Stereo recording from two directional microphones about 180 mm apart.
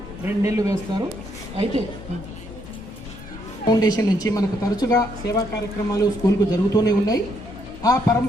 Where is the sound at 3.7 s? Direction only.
20° left (ahead or behind).